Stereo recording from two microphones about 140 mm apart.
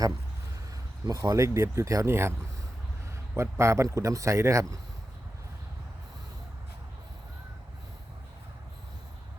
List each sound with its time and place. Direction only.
1.0 s speech: 25° right (ahead or behind)
3.3 s speech: 20° right (ahead or behind)